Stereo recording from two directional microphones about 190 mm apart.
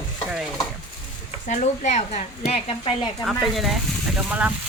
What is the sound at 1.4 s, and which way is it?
A woman's voice, 40° left (ahead or behind).